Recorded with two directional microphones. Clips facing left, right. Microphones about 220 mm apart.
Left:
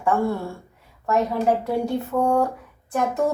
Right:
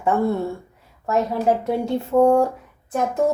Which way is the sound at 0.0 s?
20° right (ahead or behind).